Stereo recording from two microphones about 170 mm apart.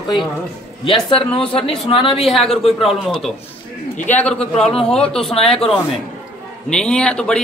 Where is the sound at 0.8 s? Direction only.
30° left (ahead or behind).